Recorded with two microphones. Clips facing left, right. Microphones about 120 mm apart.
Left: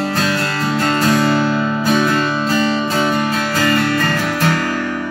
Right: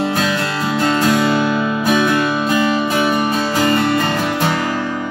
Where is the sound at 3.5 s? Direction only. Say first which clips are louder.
Right 1 dB; 20° right (ahead or behind).